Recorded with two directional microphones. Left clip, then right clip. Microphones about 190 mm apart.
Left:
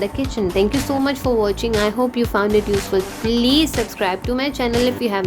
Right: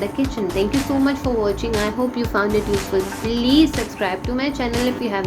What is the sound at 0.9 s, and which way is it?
Speech, 55° left (ahead or behind).